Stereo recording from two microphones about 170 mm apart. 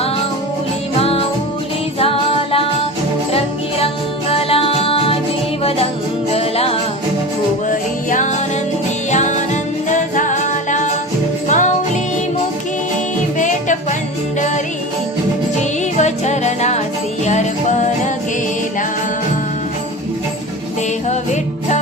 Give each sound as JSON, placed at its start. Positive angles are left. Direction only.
{"t": 1.0, "sound": "music", "side_deg": 35}
{"t": 4.3, "sound": "music", "side_deg": 35}
{"t": 8.1, "sound": "music", "side_deg": 45}
{"t": 11.4, "sound": "jingle bell", "side_deg": 45}
{"t": 16.0, "sound": "music", "side_deg": 45}